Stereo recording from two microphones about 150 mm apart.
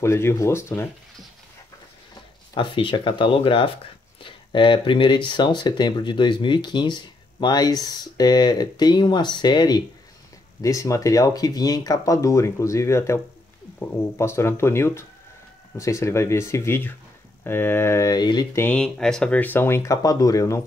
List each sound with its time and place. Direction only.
0.0 s speech: 15° left (ahead or behind)
2.5 s speech: 35° left (ahead or behind)
18.6 s speech: 10° left (ahead or behind)